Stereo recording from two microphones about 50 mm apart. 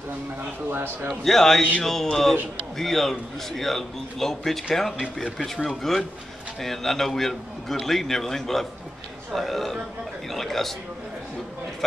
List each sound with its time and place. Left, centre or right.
1.2 s a man's voice: centre